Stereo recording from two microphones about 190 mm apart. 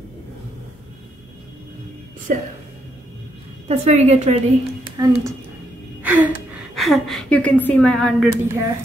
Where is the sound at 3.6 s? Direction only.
35° right (ahead or behind).